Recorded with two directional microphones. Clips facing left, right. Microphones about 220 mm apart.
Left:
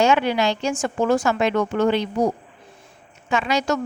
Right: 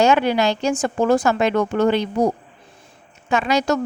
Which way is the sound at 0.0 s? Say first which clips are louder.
Right 2 dB; 40° right (ahead or behind).